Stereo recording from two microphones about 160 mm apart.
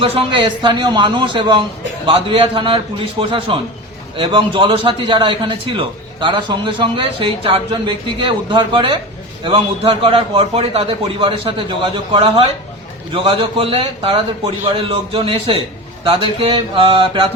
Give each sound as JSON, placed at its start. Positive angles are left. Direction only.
{"t": 0.0, "sound": "a man's voice", "side_deg": -35}